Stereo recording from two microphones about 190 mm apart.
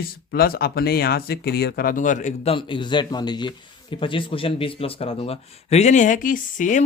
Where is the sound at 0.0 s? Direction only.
50° left (ahead or behind).